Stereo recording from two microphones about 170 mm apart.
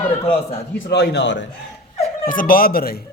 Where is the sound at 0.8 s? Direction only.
70° left (ahead or behind); by 1.4 s 90° left.